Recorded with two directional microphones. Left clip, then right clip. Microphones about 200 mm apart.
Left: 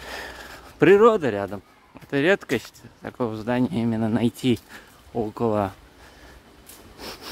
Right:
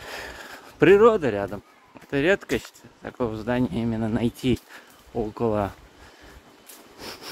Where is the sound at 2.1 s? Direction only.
20° left (ahead or behind).